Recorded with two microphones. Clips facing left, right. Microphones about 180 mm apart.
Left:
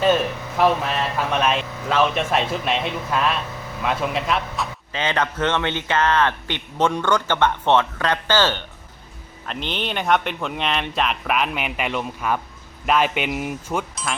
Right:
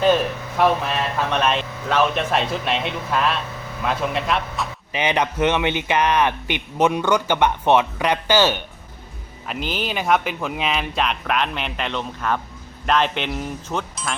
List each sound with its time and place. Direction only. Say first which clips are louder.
0.0 s speech: right 1 dB; centre (ahead or behind)
4.9 s speech: right 3 dB; 15° right (ahead or behind)